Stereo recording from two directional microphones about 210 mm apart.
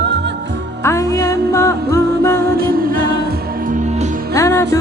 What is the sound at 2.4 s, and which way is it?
Music, 45° right (ahead or behind).